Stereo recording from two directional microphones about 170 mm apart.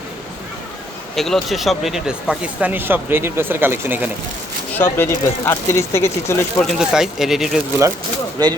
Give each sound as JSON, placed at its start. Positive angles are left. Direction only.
{"t": 1.1, "sound": "speech", "side_deg": 0}
{"t": 4.7, "sound": "speech", "side_deg": 15}
{"t": 6.7, "sound": "speech", "side_deg": 0}
{"t": 8.4, "sound": "speech", "side_deg": -25}